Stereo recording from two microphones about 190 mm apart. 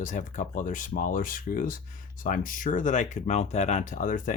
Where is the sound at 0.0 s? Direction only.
45° left (ahead or behind).